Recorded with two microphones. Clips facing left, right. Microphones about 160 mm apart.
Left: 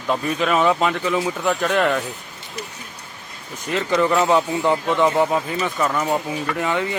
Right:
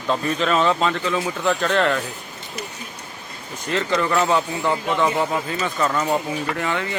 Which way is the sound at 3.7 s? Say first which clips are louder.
Left 2 dB; 15° left (ahead or behind).